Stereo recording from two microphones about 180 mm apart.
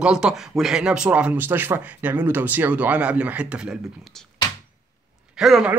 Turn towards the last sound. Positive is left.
turn(degrees=0)  # may be behind; listen again after turning